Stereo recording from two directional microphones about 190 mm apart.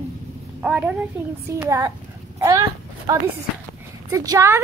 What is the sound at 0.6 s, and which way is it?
Speech, 5° right (ahead or behind).